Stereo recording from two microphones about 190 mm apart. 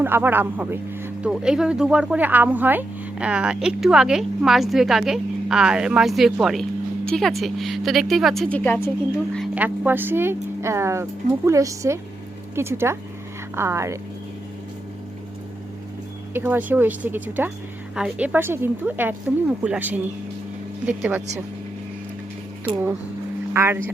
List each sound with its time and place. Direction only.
0.0 s speech: 10° right (ahead or behind); by 8.9 s 10° left (ahead or behind)
9.6 s speech: 10° right (ahead or behind)
16.3 s speech: 10° right (ahead or behind)
23.6 s speech: 10° right (ahead or behind)